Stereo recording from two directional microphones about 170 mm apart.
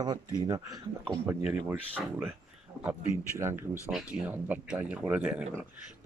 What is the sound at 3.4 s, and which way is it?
Speech, 15° right (ahead or behind).